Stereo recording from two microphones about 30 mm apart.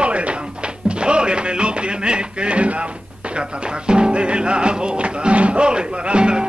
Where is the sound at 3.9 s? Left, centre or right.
Right.